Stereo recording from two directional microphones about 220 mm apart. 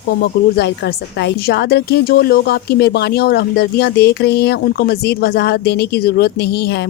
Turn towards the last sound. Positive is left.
turn(degrees=50)  # may be behind; listen again after turning